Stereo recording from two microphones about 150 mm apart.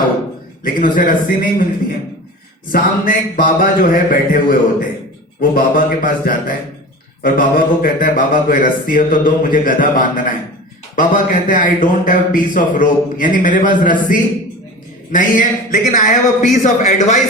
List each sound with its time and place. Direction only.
0.6 s speech: 65° left (ahead or behind)
2.7 s speech: 65° left (ahead or behind)